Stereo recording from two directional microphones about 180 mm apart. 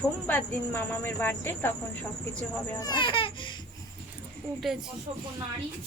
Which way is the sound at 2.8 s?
25° left (ahead or behind).